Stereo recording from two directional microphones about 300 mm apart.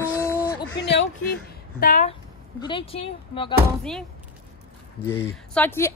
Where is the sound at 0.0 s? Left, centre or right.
Centre.